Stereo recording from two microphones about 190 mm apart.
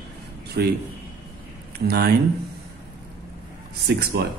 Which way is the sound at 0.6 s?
55° right (ahead or behind).